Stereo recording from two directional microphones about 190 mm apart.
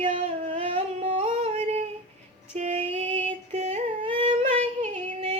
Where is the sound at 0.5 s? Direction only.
30° right (ahead or behind).